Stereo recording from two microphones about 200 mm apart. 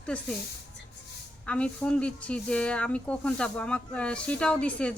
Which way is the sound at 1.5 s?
5° left (ahead or behind).